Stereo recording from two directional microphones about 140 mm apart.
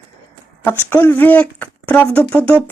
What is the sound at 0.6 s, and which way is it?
Speech, 15° left (ahead or behind).